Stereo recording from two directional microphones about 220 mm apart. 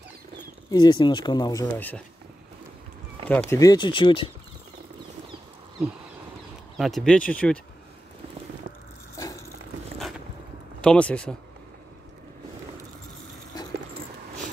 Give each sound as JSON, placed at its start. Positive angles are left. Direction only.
{"t": 0.7, "sound": "speech", "side_deg": 20}
{"t": 3.3, "sound": "speech", "side_deg": 10}
{"t": 6.8, "sound": "speech", "side_deg": 0}
{"t": 10.8, "sound": "speech", "side_deg": 5}
{"t": 13.5, "sound": "dog", "side_deg": 15}